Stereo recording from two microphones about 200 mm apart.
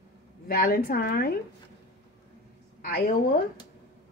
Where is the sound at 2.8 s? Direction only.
45° left (ahead or behind).